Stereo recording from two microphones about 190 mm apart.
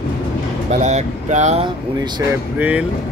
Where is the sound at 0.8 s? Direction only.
40° right (ahead or behind).